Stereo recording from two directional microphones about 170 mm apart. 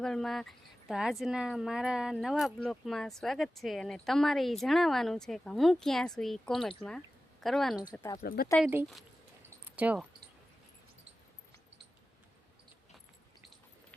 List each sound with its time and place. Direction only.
0.0 s speech: 5° left (ahead or behind)
8.2 s speech: 60° left (ahead or behind)
9.6 s speech: 10° right (ahead or behind)